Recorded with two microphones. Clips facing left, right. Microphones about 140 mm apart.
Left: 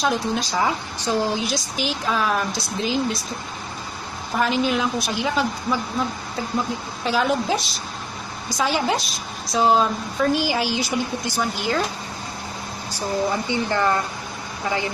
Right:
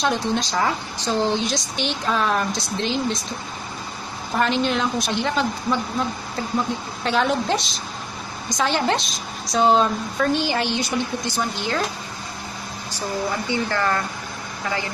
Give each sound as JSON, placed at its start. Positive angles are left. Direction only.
{"t": 0.0, "sound": "a woman's voice", "side_deg": 5}
{"t": 4.4, "sound": "a woman's voice", "side_deg": 5}
{"t": 13.3, "sound": "speech", "side_deg": 20}